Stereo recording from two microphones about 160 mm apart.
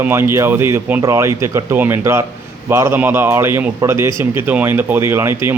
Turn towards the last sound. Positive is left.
turn(degrees=-15)  # may be behind; listen again after turning